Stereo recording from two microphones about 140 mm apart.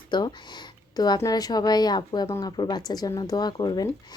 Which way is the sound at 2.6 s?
30° left (ahead or behind).